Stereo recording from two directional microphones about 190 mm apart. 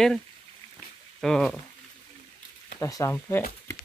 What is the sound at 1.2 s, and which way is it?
Speech, centre (ahead or behind).